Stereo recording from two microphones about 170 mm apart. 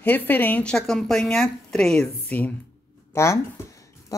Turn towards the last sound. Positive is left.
turn(degrees=15)  # may be behind; listen again after turning